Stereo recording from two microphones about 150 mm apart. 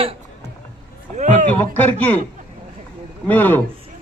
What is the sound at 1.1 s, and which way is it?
Speech, 55° right (ahead or behind).